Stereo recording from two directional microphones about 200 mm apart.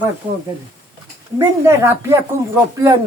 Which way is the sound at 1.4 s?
10° right (ahead or behind).